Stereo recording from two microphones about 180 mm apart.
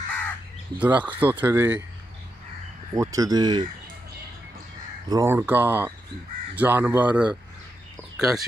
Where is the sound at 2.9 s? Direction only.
20° right (ahead or behind).